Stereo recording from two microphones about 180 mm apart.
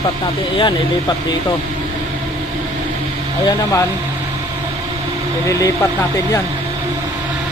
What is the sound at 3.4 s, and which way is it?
Speech, 15° left (ahead or behind).